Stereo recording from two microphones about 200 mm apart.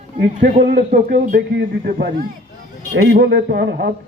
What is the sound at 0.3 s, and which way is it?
Speech, 35° right (ahead or behind).